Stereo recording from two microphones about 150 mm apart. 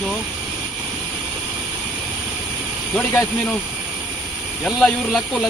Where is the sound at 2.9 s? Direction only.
10° left (ahead or behind).